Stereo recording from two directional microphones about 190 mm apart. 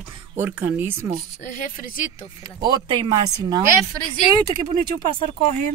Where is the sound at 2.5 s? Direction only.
25° right (ahead or behind).